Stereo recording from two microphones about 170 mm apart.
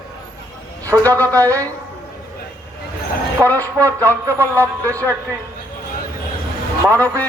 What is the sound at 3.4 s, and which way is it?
Speech, 10° left (ahead or behind).